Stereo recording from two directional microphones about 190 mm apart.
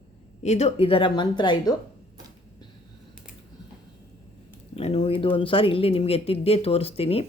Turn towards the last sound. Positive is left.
turn(degrees=30)  # may be behind; listen again after turning